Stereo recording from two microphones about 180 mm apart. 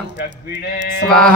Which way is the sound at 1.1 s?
5° left (ahead or behind).